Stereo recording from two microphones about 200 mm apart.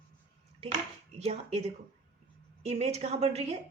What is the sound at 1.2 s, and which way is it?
A woman's voice, 30° right (ahead or behind).